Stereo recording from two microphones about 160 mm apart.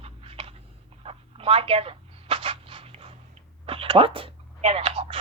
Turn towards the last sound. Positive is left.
turn(degrees=-35)  # may be behind; listen again after turning